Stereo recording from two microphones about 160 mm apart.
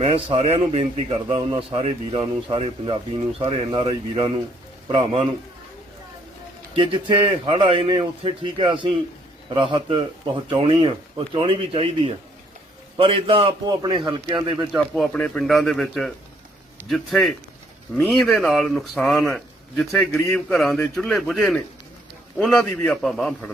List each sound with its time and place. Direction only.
0.0 s a man's voice: 35° right (ahead or behind)
6.7 s a man's voice: 35° right (ahead or behind)
15.1 s speech: 5° left (ahead or behind)